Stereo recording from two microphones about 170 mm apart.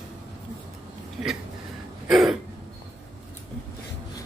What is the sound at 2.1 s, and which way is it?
Speech, centre (ahead or behind).